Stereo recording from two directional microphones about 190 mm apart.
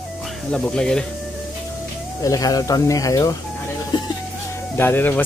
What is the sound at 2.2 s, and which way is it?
Speech, 20° left (ahead or behind).